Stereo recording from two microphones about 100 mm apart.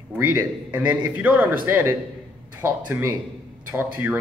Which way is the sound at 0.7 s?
15° right (ahead or behind).